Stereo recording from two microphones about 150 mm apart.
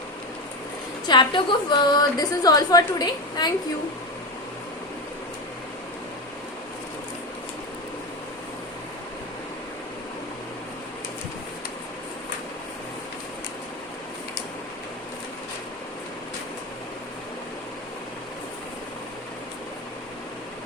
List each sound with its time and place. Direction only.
1.0 s a woman's voice: 30° left (ahead or behind)